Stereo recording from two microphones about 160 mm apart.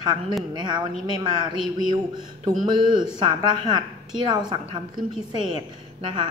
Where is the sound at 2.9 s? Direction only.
30° right (ahead or behind).